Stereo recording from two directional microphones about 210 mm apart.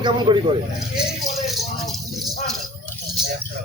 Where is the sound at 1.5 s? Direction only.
Centre (ahead or behind).